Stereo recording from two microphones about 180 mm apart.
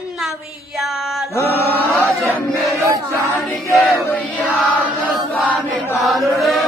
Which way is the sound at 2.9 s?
15° right (ahead or behind).